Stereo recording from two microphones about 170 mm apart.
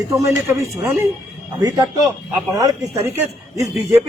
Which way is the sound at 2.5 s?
20° right (ahead or behind).